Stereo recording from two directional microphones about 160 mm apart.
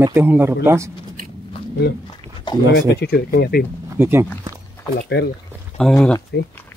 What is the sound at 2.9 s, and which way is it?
Speech, 85° left.